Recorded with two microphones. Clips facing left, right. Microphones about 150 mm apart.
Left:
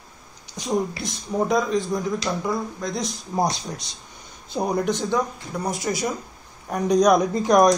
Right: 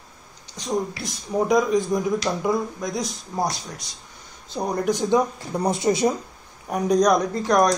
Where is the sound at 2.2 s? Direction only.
15° right (ahead or behind).